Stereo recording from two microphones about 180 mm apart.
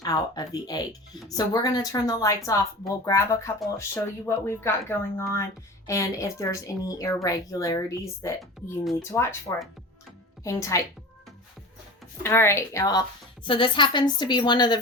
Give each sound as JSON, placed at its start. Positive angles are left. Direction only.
{"t": 0.0, "sound": "a woman's voice", "side_deg": 20}
{"t": 8.4, "sound": "speech", "side_deg": 0}
{"t": 9.1, "sound": "speech", "side_deg": 15}
{"t": 10.4, "sound": "speech", "side_deg": 15}
{"t": 12.2, "sound": "a woman's voice", "side_deg": 15}